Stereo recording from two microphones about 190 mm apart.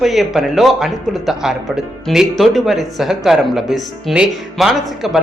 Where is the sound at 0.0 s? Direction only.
Centre (ahead or behind).